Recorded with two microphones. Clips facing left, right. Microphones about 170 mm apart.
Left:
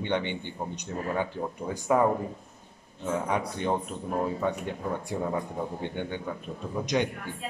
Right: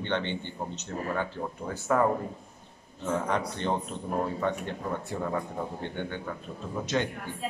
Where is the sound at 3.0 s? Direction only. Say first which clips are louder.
Even; 10° left (ahead or behind).